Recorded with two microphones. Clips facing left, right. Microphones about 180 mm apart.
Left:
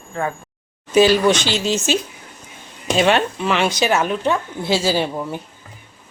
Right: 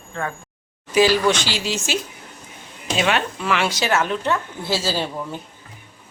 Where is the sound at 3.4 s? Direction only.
20° left (ahead or behind).